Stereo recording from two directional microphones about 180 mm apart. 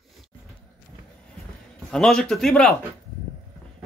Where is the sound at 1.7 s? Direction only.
5° left (ahead or behind).